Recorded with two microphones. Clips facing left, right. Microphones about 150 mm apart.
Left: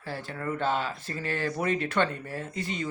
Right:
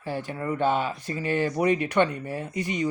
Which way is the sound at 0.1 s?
15° right (ahead or behind).